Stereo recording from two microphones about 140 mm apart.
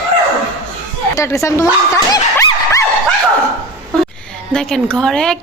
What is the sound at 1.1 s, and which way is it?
Speech, 20° left (ahead or behind).